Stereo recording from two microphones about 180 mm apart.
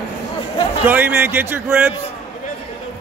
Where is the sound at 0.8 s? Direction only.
10° right (ahead or behind).